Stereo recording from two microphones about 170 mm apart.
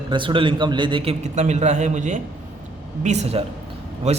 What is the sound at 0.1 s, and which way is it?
A man's voice, 30° right (ahead or behind).